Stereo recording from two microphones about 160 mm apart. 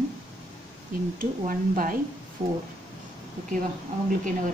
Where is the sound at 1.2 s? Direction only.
60° right (ahead or behind).